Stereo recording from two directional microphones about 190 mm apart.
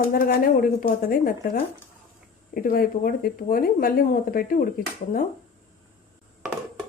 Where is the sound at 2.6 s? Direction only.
50° left (ahead or behind).